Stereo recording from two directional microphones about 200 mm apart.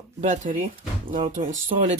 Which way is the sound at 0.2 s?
40° right (ahead or behind).